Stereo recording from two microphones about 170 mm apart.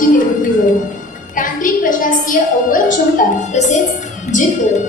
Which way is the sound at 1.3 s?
50° left (ahead or behind).